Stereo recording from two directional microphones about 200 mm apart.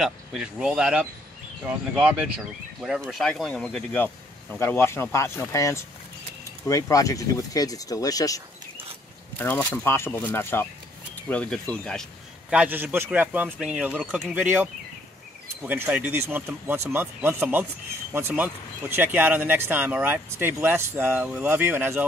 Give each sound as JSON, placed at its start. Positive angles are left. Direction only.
{"t": 0.0, "sound": "speech", "side_deg": -5}
{"t": 9.4, "sound": "speech", "side_deg": 10}